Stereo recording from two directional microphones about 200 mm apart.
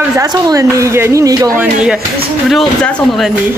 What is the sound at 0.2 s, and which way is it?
A woman's voice, 15° right (ahead or behind).